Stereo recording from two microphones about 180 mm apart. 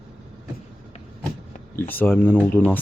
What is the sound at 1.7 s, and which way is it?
Speech, 10° left (ahead or behind).